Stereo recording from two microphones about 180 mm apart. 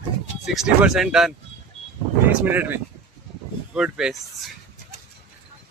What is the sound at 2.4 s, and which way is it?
Speech, 10° right (ahead or behind).